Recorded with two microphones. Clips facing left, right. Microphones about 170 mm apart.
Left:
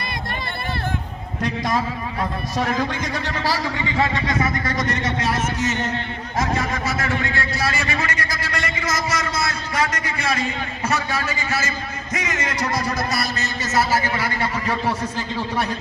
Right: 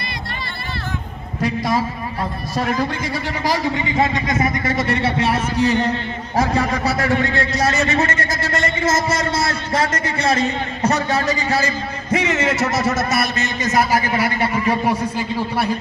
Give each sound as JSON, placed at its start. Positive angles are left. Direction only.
{"t": 1.4, "sound": "a man's voice", "side_deg": -5}
{"t": 9.0, "sound": "a man's voice", "side_deg": -30}
{"t": 9.4, "sound": "a man's voice", "side_deg": -45}